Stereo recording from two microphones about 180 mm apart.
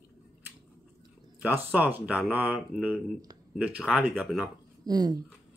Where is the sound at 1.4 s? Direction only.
10° right (ahead or behind).